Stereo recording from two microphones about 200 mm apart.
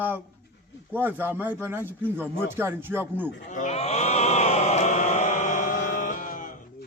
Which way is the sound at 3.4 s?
40° left (ahead or behind).